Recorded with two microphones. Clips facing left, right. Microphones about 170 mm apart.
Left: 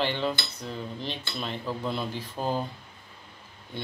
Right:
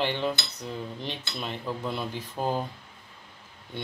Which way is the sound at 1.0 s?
15° right (ahead or behind).